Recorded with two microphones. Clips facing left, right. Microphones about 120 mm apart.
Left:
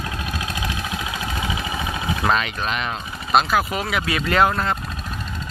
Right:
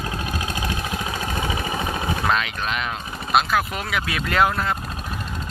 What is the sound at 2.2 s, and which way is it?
Speech, centre (ahead or behind).